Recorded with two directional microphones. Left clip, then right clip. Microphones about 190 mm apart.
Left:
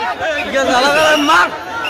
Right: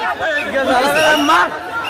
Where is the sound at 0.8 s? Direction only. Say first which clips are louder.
Left 2 dB; centre (ahead or behind).